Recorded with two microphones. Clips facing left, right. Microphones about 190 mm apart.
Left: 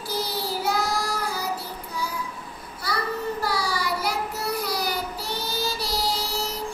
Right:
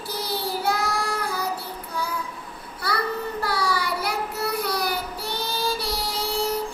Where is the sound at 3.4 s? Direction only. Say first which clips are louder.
Right 4 dB; 60° right (ahead or behind).